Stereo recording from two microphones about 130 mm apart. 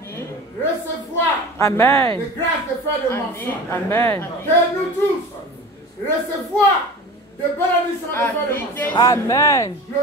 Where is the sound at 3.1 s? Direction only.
15° left (ahead or behind).